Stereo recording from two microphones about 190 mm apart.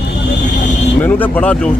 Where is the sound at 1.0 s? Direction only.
10° left (ahead or behind).